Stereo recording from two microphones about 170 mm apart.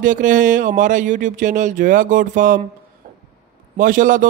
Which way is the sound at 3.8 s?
50° right (ahead or behind).